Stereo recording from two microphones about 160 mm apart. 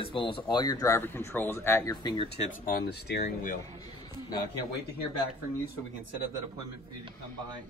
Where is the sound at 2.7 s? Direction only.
80° left.